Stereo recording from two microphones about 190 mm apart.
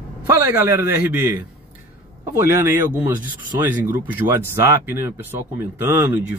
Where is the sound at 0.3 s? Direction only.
10° right (ahead or behind).